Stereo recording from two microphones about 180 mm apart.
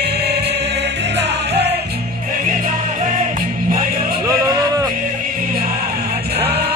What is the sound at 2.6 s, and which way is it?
Music, 45° right (ahead or behind).